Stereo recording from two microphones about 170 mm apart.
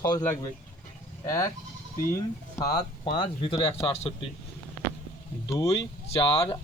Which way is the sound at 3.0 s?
30° left (ahead or behind).